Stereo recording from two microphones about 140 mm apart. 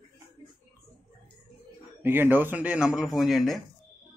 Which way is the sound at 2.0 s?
15° right (ahead or behind).